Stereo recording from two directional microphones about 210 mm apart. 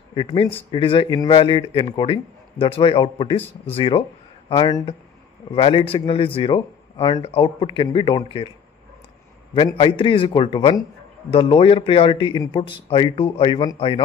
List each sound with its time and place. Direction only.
0.1 s speech: 25° left (ahead or behind)
9.5 s speech: 25° left (ahead or behind)